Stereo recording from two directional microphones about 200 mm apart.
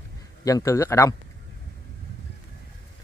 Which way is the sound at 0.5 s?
15° left (ahead or behind).